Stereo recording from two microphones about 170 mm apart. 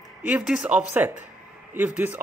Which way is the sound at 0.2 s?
5° right (ahead or behind).